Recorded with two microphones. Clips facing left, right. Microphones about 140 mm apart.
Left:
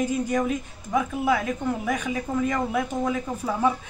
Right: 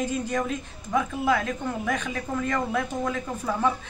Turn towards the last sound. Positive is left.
turn(degrees=10)  # may be behind; listen again after turning